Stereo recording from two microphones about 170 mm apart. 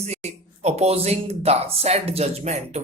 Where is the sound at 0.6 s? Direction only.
40° right (ahead or behind).